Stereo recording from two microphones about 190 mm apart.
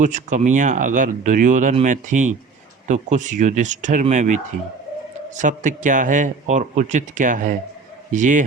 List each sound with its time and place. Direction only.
0.0 s speech: 40° right (ahead or behind)